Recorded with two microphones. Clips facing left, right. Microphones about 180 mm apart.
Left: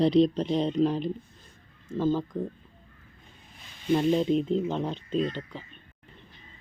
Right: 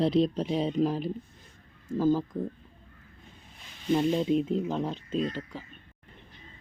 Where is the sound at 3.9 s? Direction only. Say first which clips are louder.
Left 1 dB; 5° right (ahead or behind).